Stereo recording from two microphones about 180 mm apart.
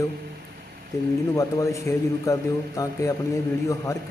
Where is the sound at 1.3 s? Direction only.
15° left (ahead or behind).